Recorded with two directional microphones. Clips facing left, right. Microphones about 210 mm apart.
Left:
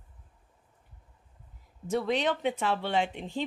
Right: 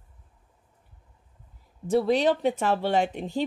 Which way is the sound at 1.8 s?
35° right (ahead or behind).